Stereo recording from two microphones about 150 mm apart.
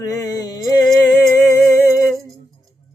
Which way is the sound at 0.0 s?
25° left (ahead or behind).